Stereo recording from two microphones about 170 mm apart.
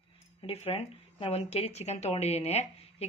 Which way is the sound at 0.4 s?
35° left (ahead or behind).